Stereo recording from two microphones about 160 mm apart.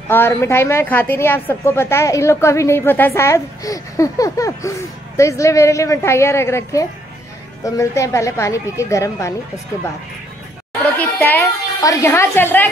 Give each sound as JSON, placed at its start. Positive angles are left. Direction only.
{"t": 0.1, "sound": "a woman's voice", "side_deg": 15}
{"t": 11.0, "sound": "a woman's voice", "side_deg": 15}